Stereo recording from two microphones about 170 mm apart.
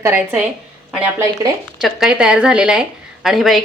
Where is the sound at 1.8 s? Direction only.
5° right (ahead or behind).